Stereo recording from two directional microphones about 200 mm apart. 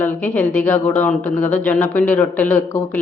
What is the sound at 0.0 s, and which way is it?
Speech, 10° left (ahead or behind).